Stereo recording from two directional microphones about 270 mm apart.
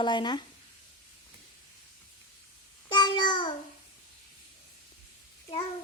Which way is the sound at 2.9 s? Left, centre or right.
Centre.